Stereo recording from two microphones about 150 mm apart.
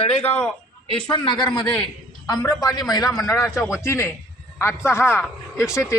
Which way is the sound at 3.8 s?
15° left (ahead or behind).